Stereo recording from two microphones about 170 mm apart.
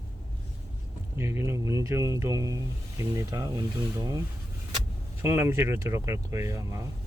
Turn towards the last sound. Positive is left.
turn(degrees=-20)  # may be behind; listen again after turning